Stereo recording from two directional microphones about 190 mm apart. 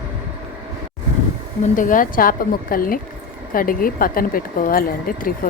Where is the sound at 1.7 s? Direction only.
45° left (ahead or behind).